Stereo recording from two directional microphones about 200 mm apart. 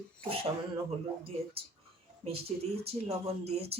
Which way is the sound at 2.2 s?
30° right (ahead or behind).